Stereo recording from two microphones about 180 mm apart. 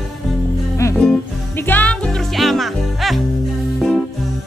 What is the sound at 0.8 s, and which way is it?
Music, 15° left (ahead or behind).